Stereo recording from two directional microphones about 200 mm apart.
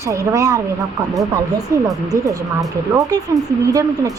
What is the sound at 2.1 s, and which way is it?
Speech, 15° right (ahead or behind).